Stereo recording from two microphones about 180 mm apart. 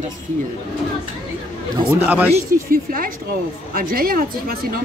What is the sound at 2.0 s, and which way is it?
Speech, 10° right (ahead or behind).